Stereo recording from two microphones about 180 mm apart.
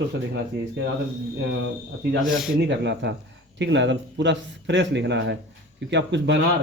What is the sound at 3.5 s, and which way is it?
Speech, 85° right.